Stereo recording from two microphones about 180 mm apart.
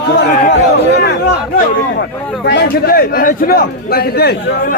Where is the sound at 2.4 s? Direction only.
65° left (ahead or behind).